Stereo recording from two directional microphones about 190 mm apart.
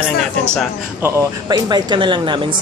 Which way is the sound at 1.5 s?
25° right (ahead or behind).